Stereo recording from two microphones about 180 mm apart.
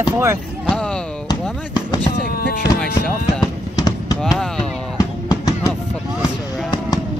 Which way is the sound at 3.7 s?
20° left (ahead or behind).